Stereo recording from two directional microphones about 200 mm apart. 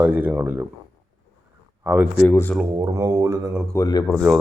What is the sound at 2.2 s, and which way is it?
Speech, 10° left (ahead or behind).